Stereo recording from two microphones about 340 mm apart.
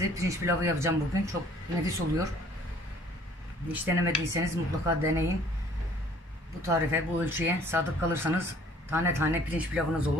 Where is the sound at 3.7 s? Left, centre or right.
Centre.